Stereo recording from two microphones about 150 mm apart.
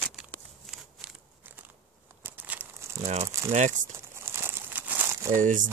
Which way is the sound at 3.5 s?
50° right (ahead or behind).